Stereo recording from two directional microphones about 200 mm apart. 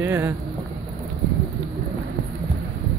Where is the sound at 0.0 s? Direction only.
10° right (ahead or behind).